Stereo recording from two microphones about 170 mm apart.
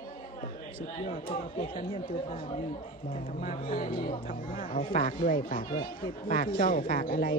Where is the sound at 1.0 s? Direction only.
55° left (ahead or behind).